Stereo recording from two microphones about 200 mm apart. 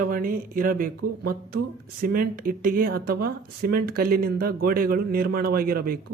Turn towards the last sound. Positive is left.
turn(degrees=-50)  # may be behind; listen again after turning